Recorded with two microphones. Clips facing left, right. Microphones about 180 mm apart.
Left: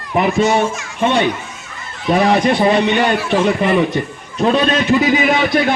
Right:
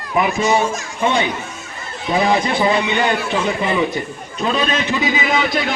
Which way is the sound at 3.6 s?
55° left (ahead or behind).